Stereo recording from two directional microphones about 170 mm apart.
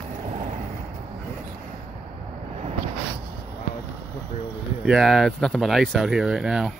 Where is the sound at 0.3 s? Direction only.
40° right (ahead or behind).